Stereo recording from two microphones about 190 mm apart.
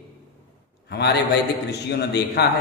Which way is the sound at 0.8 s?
60° left (ahead or behind).